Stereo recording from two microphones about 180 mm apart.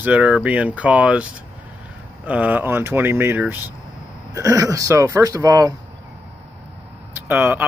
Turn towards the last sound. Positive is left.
turn(degrees=-15)  # may be behind; listen again after turning